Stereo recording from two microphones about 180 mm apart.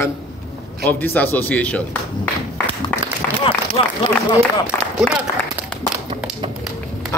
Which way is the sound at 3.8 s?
30° left (ahead or behind).